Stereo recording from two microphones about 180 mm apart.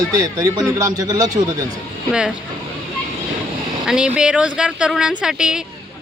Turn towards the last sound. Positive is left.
turn(degrees=-5)  # may be behind; listen again after turning